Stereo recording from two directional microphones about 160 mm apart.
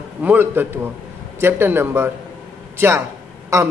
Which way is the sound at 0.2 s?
10° right (ahead or behind).